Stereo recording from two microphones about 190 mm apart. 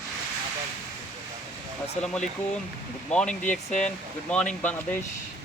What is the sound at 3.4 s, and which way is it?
Speech, 40° left (ahead or behind).